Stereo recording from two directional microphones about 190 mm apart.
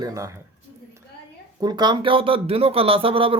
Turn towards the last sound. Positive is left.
turn(degrees=-30)  # may be behind; listen again after turning